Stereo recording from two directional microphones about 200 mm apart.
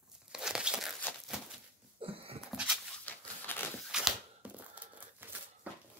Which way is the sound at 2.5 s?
5° right (ahead or behind).